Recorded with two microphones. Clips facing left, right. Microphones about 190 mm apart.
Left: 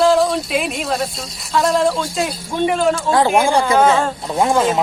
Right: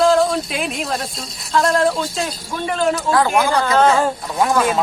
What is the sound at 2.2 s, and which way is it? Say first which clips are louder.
A man's voice: left 5 dB; 20° left (ahead or behind).